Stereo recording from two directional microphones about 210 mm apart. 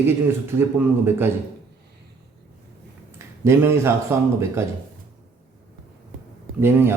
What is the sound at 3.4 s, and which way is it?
Speech, 10° right (ahead or behind).